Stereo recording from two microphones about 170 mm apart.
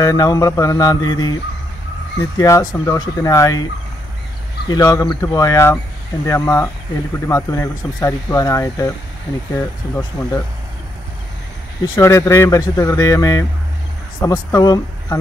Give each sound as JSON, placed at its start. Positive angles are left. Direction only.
{"t": 0.0, "sound": "speech", "side_deg": 20}
{"t": 2.3, "sound": "speech", "side_deg": 20}
{"t": 4.6, "sound": "speech", "side_deg": 25}
{"t": 11.8, "sound": "speech", "side_deg": 20}